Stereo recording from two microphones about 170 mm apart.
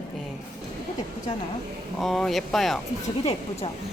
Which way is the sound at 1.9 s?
Centre (ahead or behind).